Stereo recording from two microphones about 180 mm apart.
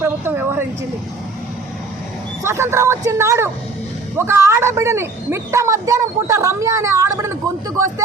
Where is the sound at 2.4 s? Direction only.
15° right (ahead or behind).